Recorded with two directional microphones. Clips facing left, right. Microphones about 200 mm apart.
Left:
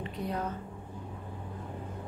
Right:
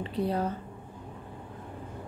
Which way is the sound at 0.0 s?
30° right (ahead or behind).